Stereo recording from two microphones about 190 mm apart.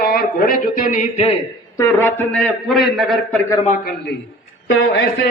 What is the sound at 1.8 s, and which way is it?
A man's voice, 10° left (ahead or behind).